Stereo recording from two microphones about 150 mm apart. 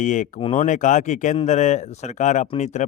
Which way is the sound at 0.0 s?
55° left (ahead or behind).